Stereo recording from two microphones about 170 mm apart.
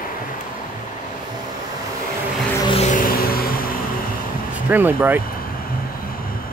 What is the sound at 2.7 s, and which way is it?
Music, 50° left (ahead or behind).